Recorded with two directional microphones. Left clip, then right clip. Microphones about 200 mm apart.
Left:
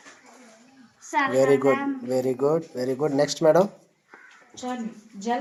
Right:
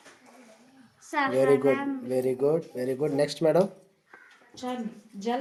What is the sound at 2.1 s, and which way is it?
Speech, 15° left (ahead or behind).